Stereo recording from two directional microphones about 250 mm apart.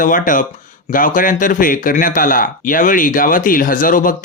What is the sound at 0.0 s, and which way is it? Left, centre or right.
Speech, left.